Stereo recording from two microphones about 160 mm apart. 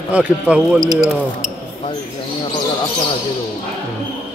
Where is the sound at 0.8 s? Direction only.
25° right (ahead or behind).